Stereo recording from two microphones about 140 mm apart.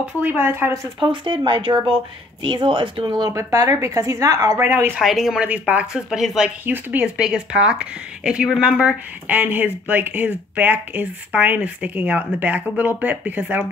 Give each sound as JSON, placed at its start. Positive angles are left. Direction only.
{"t": 0.0, "sound": "speech", "side_deg": -10}
{"t": 0.9, "sound": "speech", "side_deg": -35}
{"t": 5.0, "sound": "speech", "side_deg": 0}